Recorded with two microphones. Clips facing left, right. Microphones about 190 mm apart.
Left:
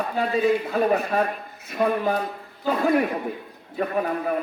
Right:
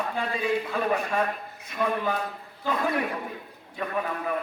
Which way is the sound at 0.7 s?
35° left (ahead or behind).